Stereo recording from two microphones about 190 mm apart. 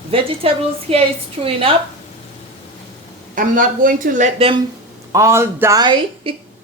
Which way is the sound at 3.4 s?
45° right (ahead or behind).